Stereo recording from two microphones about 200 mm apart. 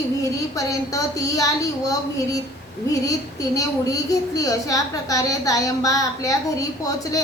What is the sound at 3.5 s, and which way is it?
A woman's voice, 15° left (ahead or behind).